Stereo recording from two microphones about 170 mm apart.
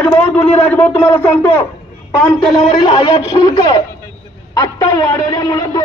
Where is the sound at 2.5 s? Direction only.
25° left (ahead or behind).